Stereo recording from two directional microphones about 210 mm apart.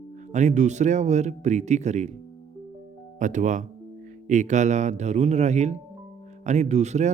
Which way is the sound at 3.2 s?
35° right (ahead or behind).